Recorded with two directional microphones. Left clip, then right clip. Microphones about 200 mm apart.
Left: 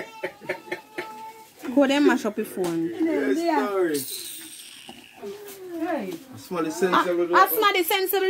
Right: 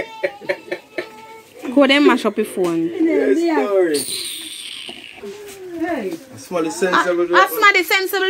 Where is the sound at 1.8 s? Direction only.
Centre (ahead or behind).